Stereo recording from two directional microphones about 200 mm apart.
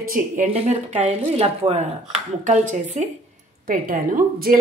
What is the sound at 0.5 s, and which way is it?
A woman's voice, 30° right (ahead or behind).